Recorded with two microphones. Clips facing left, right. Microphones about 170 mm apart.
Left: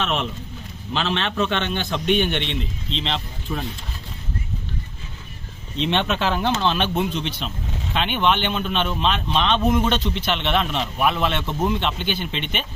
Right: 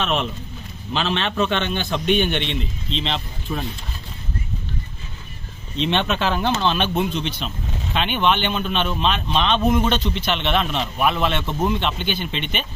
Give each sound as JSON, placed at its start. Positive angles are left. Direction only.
{"t": 0.0, "sound": "a man's voice", "side_deg": -15}
{"t": 5.8, "sound": "speech", "side_deg": 5}